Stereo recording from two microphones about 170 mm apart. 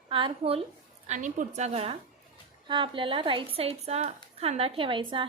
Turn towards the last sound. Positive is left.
turn(degrees=-30)  # may be behind; listen again after turning